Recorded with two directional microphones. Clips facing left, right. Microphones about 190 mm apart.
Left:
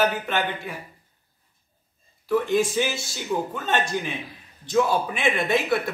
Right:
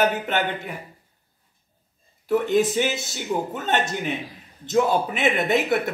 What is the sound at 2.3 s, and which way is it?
Speech, 20° right (ahead or behind).